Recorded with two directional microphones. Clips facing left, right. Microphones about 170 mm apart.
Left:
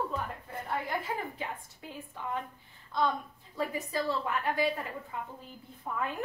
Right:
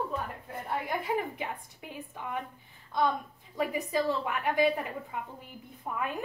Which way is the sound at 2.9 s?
15° right (ahead or behind).